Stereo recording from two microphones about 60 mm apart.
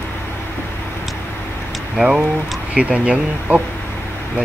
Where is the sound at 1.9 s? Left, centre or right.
Centre.